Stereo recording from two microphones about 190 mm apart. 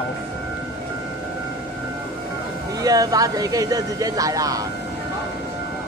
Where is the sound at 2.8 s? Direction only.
20° right (ahead or behind).